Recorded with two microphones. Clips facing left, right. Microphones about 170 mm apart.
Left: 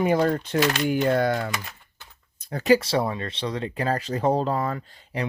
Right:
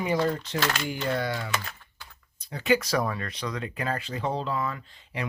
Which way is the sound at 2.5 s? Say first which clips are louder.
Left 5 dB; 40° left (ahead or behind).